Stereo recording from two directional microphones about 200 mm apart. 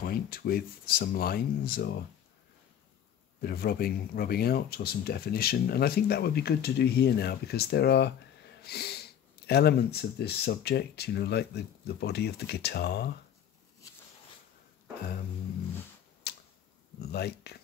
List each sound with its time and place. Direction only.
0.0 s speech: 50° left (ahead or behind)
3.3 s speech: 50° left (ahead or behind)
16.3 s tick-tock: 55° left (ahead or behind)
17.0 s speech: 55° left (ahead or behind)